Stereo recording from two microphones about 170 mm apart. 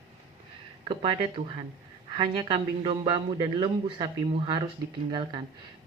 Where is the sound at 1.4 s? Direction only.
35° right (ahead or behind).